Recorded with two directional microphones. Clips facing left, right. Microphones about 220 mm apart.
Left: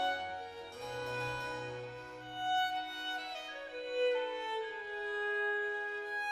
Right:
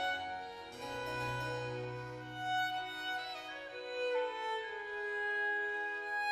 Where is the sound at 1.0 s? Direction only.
20° right (ahead or behind).